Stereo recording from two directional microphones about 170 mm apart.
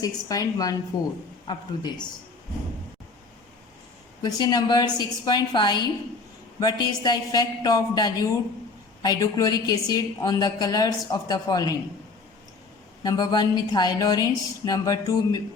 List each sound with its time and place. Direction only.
0.0 s a woman's voice: 20° left (ahead or behind)
4.2 s a woman's voice: 25° left (ahead or behind)
13.0 s a woman's voice: 25° left (ahead or behind)